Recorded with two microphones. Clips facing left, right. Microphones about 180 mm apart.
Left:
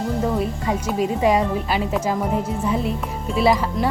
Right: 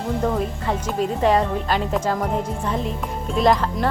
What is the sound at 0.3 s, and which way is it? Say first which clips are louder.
Speech: left 1 dB; 10° left (ahead or behind).